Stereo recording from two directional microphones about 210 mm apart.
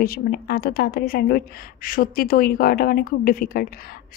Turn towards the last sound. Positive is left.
turn(degrees=45)  # may be behind; listen again after turning